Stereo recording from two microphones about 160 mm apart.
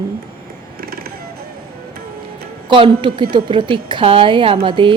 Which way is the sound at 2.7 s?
30° right (ahead or behind).